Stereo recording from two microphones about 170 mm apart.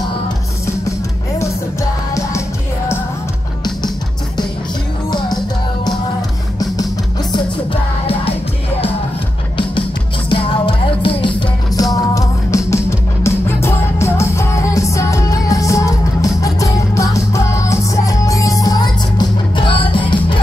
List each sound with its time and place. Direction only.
10.3 s music: 30° left (ahead or behind)